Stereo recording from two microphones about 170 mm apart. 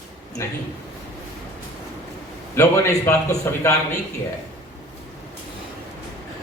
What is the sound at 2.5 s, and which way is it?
A man's voice, 15° left (ahead or behind).